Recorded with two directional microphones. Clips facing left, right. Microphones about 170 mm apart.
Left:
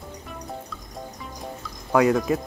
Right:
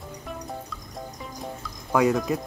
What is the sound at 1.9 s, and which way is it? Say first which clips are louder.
Speech: left 2 dB; centre (ahead or behind).